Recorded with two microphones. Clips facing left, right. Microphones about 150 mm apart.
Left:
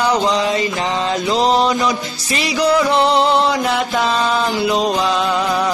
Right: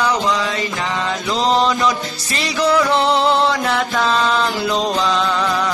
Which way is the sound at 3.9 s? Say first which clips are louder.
Even; 20° left (ahead or behind).